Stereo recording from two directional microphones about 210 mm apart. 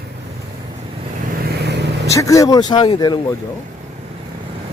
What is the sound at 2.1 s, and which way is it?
A woman's voice, 15° left (ahead or behind).